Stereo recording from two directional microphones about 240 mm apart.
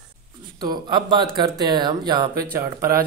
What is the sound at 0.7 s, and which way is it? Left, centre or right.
Speech, centre.